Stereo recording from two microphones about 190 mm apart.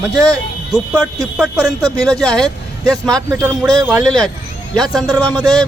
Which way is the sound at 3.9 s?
Centre (ahead or behind).